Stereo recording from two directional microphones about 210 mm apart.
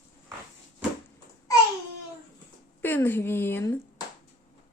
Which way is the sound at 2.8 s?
10° left (ahead or behind).